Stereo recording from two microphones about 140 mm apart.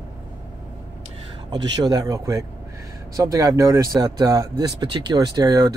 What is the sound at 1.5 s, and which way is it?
Speech, 30° right (ahead or behind).